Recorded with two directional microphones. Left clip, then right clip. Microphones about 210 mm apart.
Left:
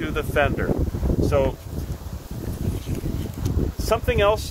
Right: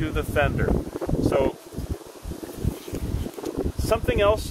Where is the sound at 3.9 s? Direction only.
15° left (ahead or behind).